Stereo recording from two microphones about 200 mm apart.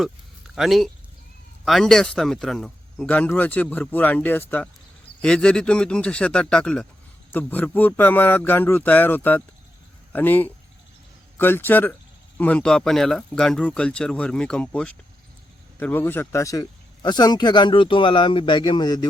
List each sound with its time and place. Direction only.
0.5 s speech: centre (ahead or behind); by 19.0 s 20° left (ahead or behind)